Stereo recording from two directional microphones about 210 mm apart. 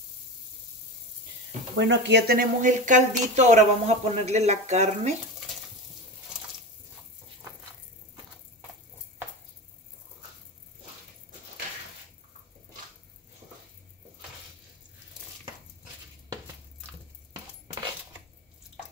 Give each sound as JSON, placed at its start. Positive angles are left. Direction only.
{"t": 1.8, "sound": "speech", "side_deg": -55}